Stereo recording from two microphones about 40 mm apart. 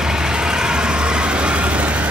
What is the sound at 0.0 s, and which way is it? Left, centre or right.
Vehicle, centre.